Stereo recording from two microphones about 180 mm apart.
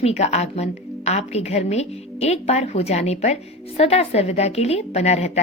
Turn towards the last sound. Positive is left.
turn(degrees=40)  # may be behind; listen again after turning